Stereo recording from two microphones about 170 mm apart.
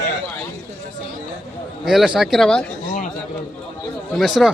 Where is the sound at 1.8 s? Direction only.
Centre (ahead or behind).